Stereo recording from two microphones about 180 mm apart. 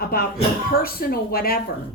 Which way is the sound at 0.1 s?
55° left (ahead or behind).